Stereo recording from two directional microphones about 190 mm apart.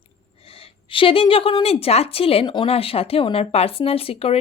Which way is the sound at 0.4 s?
30° left (ahead or behind).